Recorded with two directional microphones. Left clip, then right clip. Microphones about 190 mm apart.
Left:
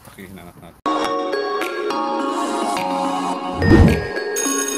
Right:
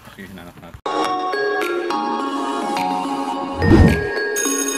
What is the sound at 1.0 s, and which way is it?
Music, centre (ahead or behind).